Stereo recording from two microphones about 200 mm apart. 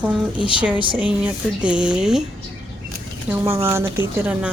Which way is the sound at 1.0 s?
5° right (ahead or behind).